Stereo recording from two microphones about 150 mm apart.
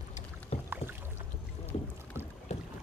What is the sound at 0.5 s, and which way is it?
Rowboat, 45° left (ahead or behind).